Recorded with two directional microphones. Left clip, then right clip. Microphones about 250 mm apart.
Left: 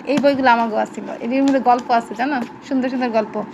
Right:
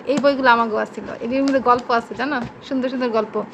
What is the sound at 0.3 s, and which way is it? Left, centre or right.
A woman's voice, centre.